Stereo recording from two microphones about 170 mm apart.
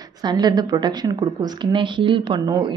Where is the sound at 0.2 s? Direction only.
25° right (ahead or behind).